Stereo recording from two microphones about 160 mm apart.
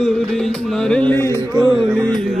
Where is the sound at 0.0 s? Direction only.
5° left (ahead or behind).